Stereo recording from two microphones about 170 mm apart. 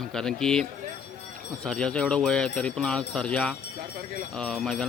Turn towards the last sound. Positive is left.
turn(degrees=5)  # may be behind; listen again after turning